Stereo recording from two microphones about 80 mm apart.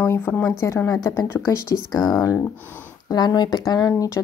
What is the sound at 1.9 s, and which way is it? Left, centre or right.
Speech, left.